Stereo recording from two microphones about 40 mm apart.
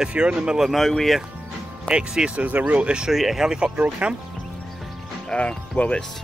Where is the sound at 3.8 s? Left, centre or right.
Right.